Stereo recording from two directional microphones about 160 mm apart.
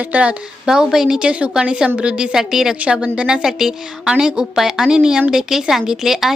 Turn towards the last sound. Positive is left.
turn(degrees=0)  # may be behind; listen again after turning